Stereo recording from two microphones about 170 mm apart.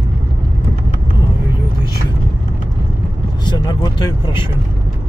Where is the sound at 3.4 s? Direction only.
25° left (ahead or behind).